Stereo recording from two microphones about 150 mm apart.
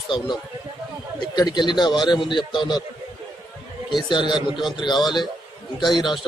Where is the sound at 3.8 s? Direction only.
30° left (ahead or behind).